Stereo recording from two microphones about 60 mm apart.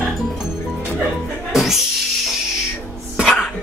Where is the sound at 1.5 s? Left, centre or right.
Centre.